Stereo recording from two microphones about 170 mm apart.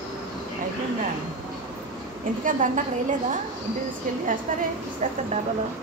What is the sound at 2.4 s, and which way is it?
Speech, 50° right (ahead or behind).